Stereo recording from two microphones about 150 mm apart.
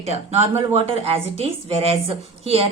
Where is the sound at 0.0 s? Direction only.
45° right (ahead or behind).